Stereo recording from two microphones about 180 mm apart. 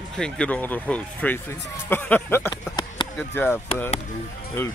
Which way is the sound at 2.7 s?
25° left (ahead or behind).